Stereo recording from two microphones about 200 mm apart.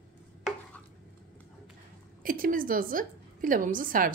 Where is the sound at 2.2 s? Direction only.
45° right (ahead or behind).